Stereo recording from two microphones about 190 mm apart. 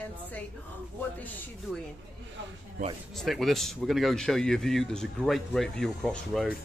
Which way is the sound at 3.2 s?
Centre (ahead or behind).